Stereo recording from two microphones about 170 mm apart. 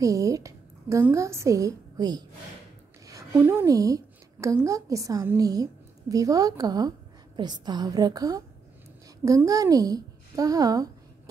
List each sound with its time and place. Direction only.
0.0 s a woman's voice: 20° right (ahead or behind)
3.1 s a sound: 15° right (ahead or behind)
4.6 s a woman's voice: 20° right (ahead or behind)